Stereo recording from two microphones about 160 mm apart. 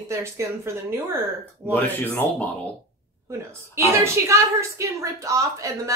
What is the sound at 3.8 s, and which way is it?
A woman's voice, 20° right (ahead or behind).